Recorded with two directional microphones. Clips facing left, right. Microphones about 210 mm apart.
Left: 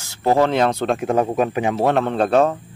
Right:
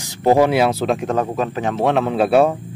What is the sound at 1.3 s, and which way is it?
Speech, 10° left (ahead or behind).